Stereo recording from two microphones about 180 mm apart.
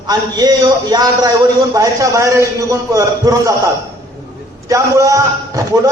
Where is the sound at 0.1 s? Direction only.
20° right (ahead or behind).